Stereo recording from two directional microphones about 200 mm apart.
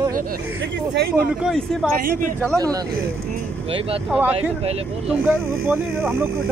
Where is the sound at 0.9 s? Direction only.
55° right (ahead or behind).